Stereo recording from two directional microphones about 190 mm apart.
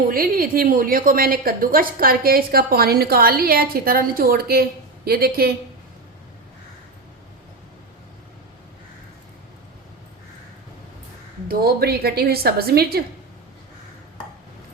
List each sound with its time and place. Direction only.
0.1 s a woman's voice: 50° right (ahead or behind)
11.4 s a woman's voice: 55° right (ahead or behind)